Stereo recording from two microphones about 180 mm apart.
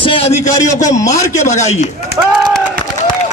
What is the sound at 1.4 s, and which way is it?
Speech, 40° left (ahead or behind).